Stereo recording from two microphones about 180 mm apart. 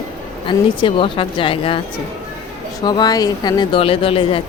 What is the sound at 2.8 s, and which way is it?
Speech, 20° left (ahead or behind).